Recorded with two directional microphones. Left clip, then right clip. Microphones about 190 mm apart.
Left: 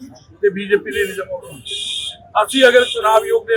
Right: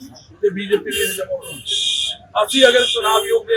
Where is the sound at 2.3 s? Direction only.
10° left (ahead or behind).